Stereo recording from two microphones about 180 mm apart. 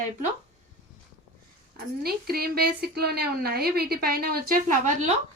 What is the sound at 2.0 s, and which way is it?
Speech, 60° right (ahead or behind).